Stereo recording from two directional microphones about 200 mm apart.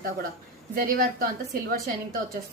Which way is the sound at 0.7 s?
45° right (ahead or behind).